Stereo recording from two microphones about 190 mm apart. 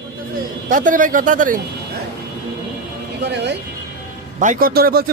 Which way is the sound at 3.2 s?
65° right (ahead or behind).